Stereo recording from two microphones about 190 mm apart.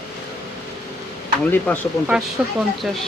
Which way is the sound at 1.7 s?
10° left (ahead or behind).